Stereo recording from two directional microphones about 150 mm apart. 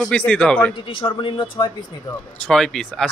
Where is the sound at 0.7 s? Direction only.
35° left (ahead or behind).